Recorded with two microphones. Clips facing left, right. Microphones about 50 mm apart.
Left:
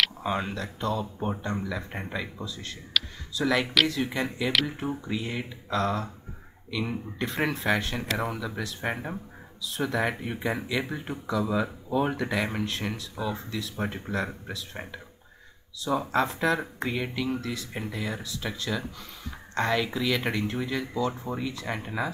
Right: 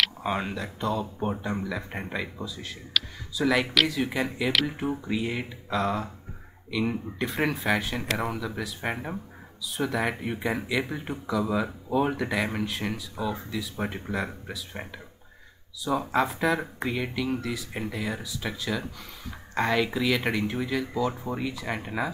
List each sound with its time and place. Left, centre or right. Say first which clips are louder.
0.2 s speech: even; centre